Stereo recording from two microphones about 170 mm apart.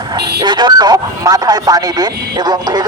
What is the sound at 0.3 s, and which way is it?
A man's voice, 25° right (ahead or behind).